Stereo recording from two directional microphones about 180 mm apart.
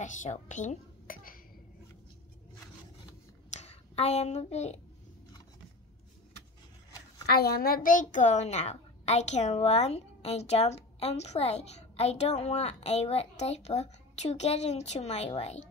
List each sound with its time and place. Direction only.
0.0 s speech: 45° left (ahead or behind)
3.5 s speech: 35° left (ahead or behind)
7.2 s a woman's voice: 60° left (ahead or behind); by 15.6 s 35° left (ahead or behind)